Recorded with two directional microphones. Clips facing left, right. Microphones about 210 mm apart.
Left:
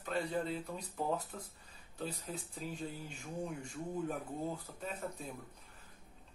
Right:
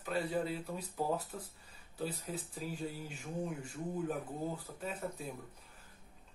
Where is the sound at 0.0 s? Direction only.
5° right (ahead or behind).